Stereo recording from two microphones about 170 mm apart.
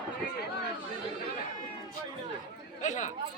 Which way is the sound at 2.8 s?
45° left (ahead or behind).